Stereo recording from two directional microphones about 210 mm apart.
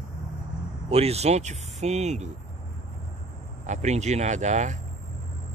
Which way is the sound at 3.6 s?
35° right (ahead or behind).